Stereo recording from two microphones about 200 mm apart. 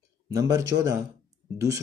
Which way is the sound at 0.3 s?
15° right (ahead or behind).